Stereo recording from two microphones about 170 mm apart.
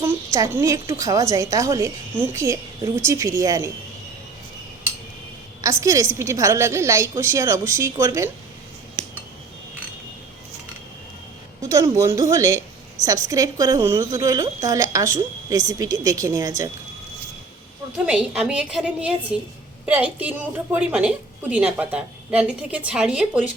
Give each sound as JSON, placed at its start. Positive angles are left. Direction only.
{"t": 0.0, "sound": "a woman's voice", "side_deg": -15}
{"t": 5.6, "sound": "a woman's voice", "side_deg": -20}
{"t": 11.6, "sound": "a woman's voice", "side_deg": -20}
{"t": 18.0, "sound": "a woman's voice", "side_deg": -5}